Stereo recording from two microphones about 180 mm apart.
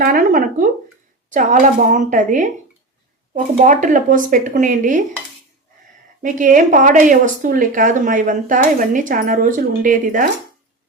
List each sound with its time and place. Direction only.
0.0 s speech: 50° right (ahead or behind)
6.2 s speech: 45° right (ahead or behind)